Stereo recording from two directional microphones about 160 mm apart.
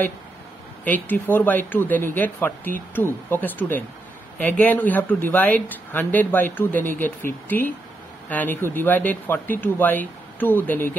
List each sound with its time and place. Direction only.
0.8 s speech: 10° left (ahead or behind)